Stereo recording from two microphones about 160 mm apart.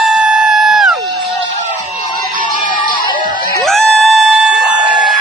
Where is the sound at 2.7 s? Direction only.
60° left (ahead or behind).